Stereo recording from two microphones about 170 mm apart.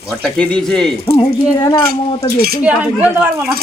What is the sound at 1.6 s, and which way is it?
Speech, 25° left (ahead or behind).